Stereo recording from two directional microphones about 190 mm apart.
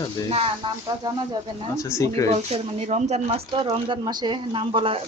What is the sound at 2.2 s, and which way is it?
Speech, 35° right (ahead or behind).